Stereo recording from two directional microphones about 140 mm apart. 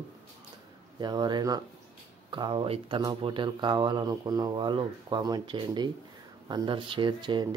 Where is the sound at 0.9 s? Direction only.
30° right (ahead or behind).